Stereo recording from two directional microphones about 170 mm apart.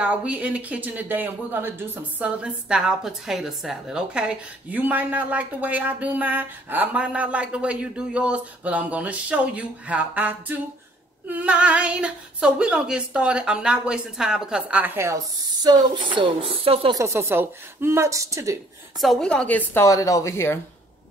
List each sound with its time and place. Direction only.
0.0 s speech: 10° right (ahead or behind); by 17.0 s 30° right (ahead or behind)
17.0 s speech: 15° right (ahead or behind)
18.9 s a woman's voice: centre (ahead or behind)